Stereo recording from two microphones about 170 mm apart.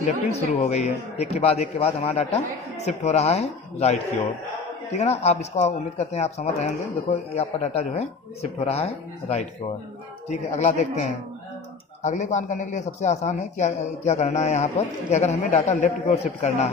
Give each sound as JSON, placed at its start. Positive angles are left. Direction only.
{"t": 0.3, "sound": "a man's voice", "side_deg": 40}